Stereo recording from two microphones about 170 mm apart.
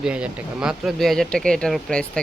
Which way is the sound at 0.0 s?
5° right (ahead or behind).